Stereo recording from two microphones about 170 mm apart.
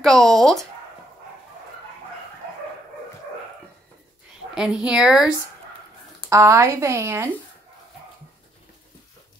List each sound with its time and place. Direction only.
0.0 s a woman's voice: centre (ahead or behind)
4.6 s a woman's voice: 5° right (ahead or behind)
6.2 s speech: 15° right (ahead or behind)